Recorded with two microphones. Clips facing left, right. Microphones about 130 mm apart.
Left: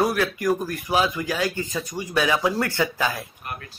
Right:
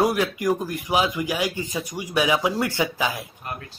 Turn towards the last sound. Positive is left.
turn(degrees=-15)  # may be behind; listen again after turning